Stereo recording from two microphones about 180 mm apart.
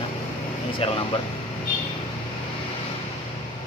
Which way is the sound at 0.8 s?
35° left (ahead or behind).